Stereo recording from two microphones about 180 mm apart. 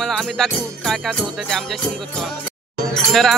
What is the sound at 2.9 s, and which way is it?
Speech, centre (ahead or behind).